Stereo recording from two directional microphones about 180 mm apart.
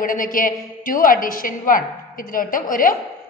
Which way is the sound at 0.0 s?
50° left (ahead or behind).